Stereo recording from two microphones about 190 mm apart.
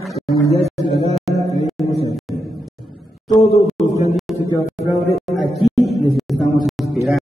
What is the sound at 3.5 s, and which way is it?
Speech, centre (ahead or behind).